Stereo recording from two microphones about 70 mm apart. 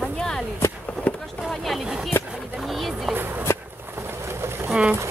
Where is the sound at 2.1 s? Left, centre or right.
Left.